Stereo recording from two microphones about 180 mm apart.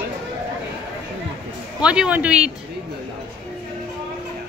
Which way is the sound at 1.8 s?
5° right (ahead or behind).